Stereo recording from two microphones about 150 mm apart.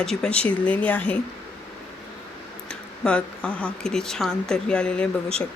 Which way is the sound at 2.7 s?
5° left (ahead or behind).